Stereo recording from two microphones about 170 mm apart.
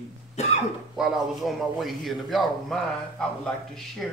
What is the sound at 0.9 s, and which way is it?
A man's voice, centre (ahead or behind).